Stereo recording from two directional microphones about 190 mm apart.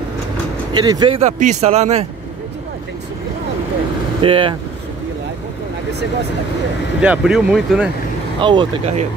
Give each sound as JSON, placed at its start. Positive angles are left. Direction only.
{"t": 0.7, "sound": "speech", "side_deg": -20}
{"t": 4.2, "sound": "speech", "side_deg": -25}
{"t": 7.0, "sound": "speech", "side_deg": -5}
{"t": 8.4, "sound": "speech", "side_deg": -25}